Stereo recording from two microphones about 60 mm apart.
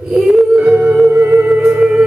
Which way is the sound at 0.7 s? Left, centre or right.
Right.